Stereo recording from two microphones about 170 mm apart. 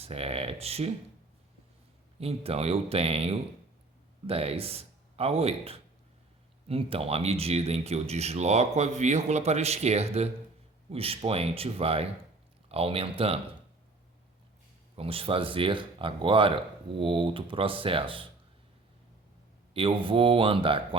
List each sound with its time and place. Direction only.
0.0 s speech: 35° right (ahead or behind)
2.1 s speech: 35° right (ahead or behind)
14.9 s speech: 35° right (ahead or behind)
19.7 s speech: 30° right (ahead or behind)